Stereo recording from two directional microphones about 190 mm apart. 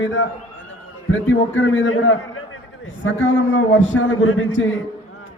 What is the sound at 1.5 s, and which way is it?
A man's voice, 90° left.